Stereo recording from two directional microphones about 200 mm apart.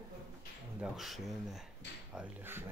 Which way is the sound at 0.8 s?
Centre (ahead or behind).